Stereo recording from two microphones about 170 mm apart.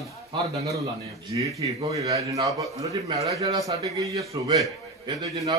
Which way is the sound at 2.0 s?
20° right (ahead or behind).